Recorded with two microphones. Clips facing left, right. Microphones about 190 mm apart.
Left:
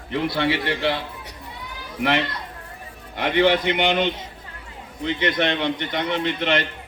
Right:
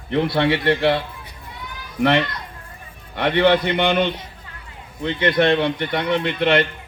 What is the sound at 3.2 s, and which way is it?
Speech, 55° right (ahead or behind).